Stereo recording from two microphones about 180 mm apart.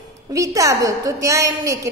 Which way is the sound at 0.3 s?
20° right (ahead or behind).